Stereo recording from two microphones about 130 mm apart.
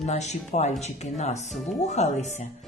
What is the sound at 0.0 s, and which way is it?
Music, 60° left (ahead or behind).